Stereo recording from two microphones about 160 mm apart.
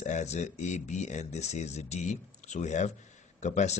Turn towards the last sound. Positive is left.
turn(degrees=45)  # may be behind; listen again after turning